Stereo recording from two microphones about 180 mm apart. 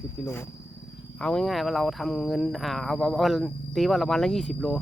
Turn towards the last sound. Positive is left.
turn(degrees=0)  # may be behind; listen again after turning